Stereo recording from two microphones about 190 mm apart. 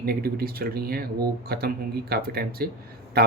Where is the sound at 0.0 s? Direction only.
55° right (ahead or behind).